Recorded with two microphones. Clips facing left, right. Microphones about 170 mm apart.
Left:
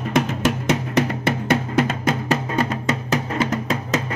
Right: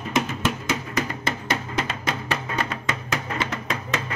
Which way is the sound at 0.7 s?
70° left (ahead or behind).